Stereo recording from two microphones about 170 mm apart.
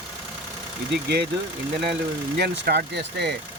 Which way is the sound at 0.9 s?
75° right (ahead or behind).